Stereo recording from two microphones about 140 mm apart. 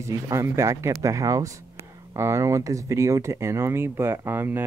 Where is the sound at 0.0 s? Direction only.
20° right (ahead or behind).